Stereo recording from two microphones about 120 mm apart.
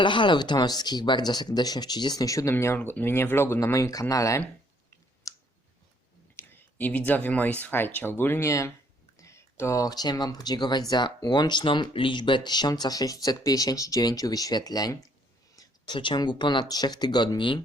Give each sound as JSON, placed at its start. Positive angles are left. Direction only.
{"t": 0.0, "sound": "speech", "side_deg": 40}
{"t": 5.2, "sound": "clicking", "side_deg": 30}
{"t": 6.3, "sound": "speech", "side_deg": 20}